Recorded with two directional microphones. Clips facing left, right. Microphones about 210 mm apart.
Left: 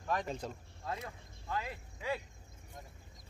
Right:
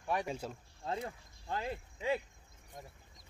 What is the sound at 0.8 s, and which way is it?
Speech, 30° right (ahead or behind).